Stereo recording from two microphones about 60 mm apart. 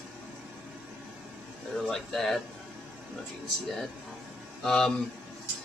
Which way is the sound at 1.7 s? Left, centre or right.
Centre.